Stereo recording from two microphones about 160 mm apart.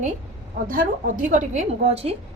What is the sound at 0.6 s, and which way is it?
A woman's voice, 60° right (ahead or behind).